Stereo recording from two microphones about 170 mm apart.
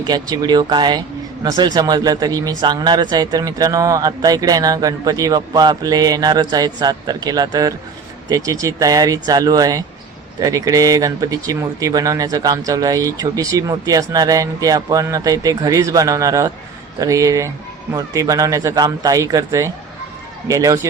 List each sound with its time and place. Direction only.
0.1 s speech: 25° right (ahead or behind)